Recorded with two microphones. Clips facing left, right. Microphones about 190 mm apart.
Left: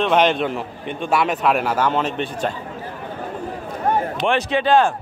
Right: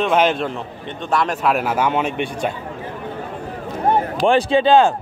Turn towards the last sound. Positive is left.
turn(degrees=-25)  # may be behind; listen again after turning